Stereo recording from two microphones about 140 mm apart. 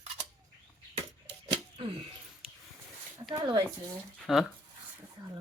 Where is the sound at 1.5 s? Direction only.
40° right (ahead or behind).